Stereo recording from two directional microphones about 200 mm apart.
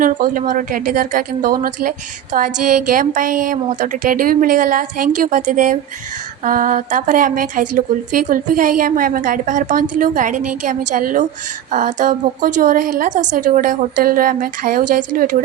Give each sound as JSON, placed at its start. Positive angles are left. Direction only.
{"t": 0.0, "sound": "a woman's voice", "side_deg": -45}